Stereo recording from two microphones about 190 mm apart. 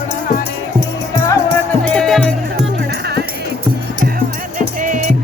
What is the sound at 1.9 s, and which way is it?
Music, centre (ahead or behind).